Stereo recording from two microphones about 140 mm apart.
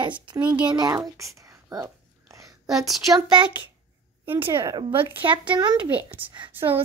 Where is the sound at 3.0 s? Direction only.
30° right (ahead or behind).